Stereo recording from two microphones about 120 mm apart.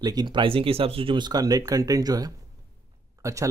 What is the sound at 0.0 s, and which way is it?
Speech, 35° right (ahead or behind).